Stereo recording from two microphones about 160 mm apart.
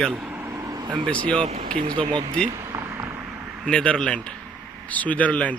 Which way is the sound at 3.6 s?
5° left (ahead or behind).